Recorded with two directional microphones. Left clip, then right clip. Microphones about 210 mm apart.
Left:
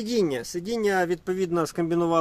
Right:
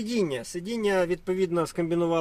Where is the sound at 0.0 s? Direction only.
30° left (ahead or behind).